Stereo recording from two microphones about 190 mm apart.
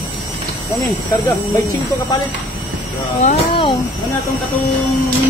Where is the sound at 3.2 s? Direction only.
30° left (ahead or behind).